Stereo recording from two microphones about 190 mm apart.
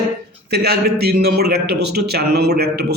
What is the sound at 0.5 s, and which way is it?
A man's voice, 60° right (ahead or behind).